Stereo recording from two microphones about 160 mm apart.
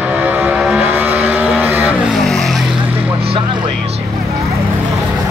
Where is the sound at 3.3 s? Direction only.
30° right (ahead or behind).